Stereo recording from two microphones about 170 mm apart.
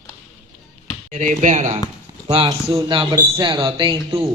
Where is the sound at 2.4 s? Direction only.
25° right (ahead or behind).